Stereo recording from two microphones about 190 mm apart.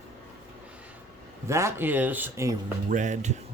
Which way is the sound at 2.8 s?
40° right (ahead or behind).